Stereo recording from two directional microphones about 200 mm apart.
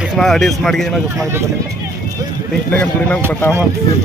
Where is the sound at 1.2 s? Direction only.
15° right (ahead or behind).